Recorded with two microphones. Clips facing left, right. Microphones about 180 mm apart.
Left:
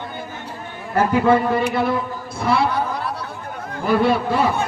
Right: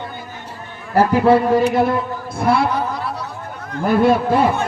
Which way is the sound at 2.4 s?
55° right (ahead or behind).